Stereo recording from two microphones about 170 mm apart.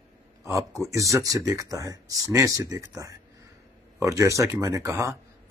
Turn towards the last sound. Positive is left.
turn(degrees=-15)  # may be behind; listen again after turning